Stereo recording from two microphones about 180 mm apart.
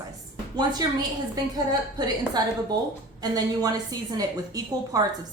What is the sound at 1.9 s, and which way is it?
A woman's voice, 25° right (ahead or behind).